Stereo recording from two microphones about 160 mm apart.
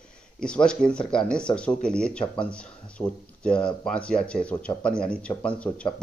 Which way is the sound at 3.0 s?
25° left (ahead or behind).